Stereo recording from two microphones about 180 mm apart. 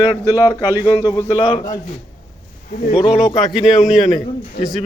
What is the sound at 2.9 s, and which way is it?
Speech, 30° left (ahead or behind).